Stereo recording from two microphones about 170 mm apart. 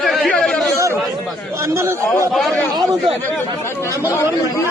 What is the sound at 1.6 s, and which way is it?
Speech, 15° right (ahead or behind).